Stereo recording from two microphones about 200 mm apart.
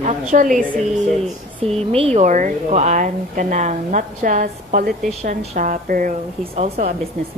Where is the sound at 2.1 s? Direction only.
40° right (ahead or behind).